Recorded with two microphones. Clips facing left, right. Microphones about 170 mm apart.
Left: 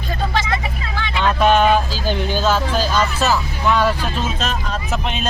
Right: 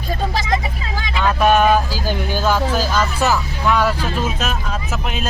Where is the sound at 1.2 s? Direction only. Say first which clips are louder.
Even; 10° right (ahead or behind).